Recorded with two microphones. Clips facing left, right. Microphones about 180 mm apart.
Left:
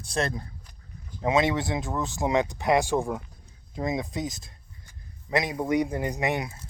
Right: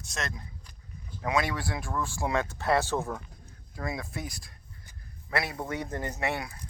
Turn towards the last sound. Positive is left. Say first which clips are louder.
# left 4 dB
turn(degrees=20)  # may be behind; listen again after turning